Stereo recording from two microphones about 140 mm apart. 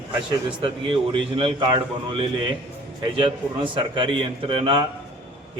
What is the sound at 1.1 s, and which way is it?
A man's voice, 35° right (ahead or behind).